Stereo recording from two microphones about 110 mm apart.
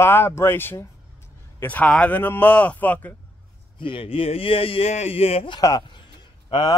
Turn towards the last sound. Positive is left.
turn(degrees=40)  # may be behind; listen again after turning